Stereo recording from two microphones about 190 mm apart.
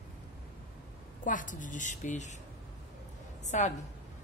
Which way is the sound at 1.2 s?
45° left (ahead or behind).